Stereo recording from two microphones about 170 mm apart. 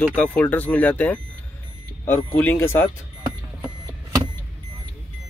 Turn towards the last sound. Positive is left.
turn(degrees=-25)  # may be behind; listen again after turning